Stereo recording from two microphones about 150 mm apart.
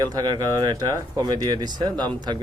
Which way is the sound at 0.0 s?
25° right (ahead or behind).